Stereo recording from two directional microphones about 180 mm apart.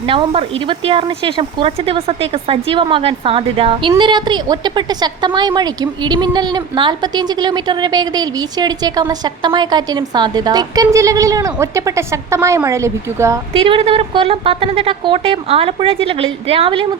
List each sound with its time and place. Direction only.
0.0 s speech: 30° right (ahead or behind)
13.6 s speech: 30° right (ahead or behind)